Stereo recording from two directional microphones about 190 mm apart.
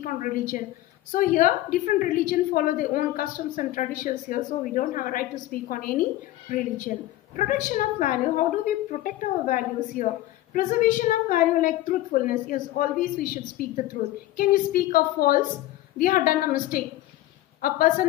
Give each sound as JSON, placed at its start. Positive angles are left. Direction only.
{"t": 0.0, "sound": "a woman's voice", "side_deg": 45}